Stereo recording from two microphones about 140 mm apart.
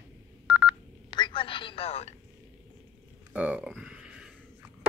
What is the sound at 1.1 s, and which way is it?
Telephone, 35° left (ahead or behind).